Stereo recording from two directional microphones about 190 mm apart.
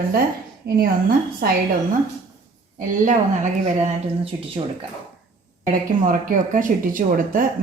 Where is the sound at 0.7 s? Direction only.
55° right (ahead or behind).